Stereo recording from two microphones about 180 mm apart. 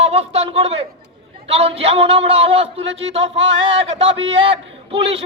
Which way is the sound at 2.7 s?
90° right.